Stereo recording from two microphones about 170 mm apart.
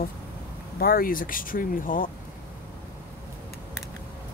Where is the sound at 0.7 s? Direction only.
60° left (ahead or behind).